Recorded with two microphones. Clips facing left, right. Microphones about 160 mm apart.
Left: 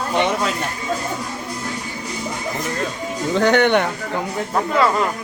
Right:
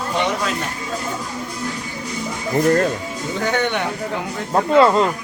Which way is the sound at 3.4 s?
70° left (ahead or behind).